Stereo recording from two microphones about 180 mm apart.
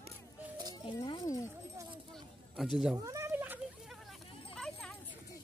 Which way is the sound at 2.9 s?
15° right (ahead or behind).